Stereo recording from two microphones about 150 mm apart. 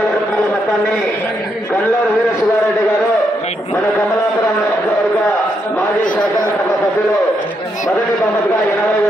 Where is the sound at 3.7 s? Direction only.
20° left (ahead or behind).